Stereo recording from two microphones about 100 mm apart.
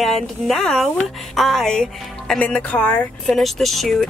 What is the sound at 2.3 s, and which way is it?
Speech, 10° left (ahead or behind).